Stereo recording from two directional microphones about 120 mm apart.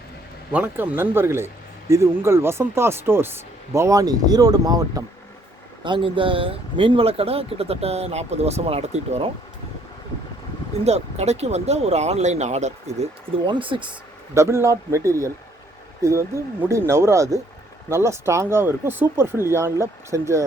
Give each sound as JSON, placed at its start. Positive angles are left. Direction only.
{"t": 0.5, "sound": "speech", "side_deg": -15}
{"t": 5.8, "sound": "speech", "side_deg": -45}
{"t": 10.8, "sound": "speech", "side_deg": -65}
{"t": 13.3, "sound": "speech", "side_deg": -45}
{"t": 14.3, "sound": "speech", "side_deg": -25}